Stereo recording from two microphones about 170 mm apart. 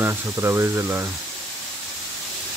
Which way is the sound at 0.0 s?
15° right (ahead or behind).